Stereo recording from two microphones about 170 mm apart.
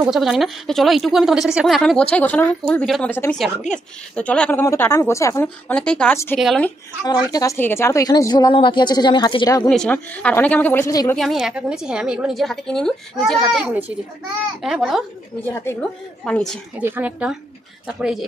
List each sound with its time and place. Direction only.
0.0 s a woman's voice: 5° right (ahead or behind)
7.2 s a woman's voice: 20° left (ahead or behind)
9.7 s a woman's voice: 5° left (ahead or behind)
11.1 s a woman's voice: centre (ahead or behind)
15.5 s a woman's voice: 15° left (ahead or behind)
16.7 s a woman's voice: 10° right (ahead or behind)